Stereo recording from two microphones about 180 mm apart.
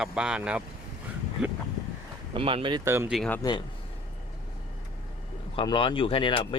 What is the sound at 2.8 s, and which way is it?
Speech, 15° right (ahead or behind).